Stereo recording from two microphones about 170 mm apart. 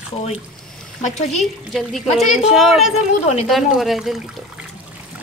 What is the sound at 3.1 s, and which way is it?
Speech, 40° left (ahead or behind).